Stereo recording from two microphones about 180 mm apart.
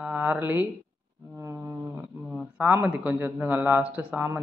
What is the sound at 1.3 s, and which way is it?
Music, 15° right (ahead or behind).